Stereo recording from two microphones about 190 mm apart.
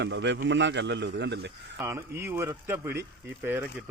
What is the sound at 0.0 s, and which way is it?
A man's voice, 70° right (ahead or behind).